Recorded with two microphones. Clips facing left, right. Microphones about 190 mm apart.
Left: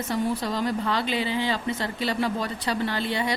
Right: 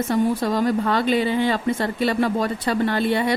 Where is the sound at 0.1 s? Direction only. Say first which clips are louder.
Right 5 dB; 50° right (ahead or behind).